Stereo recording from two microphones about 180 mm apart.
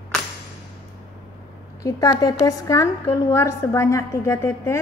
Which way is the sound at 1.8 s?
20° left (ahead or behind).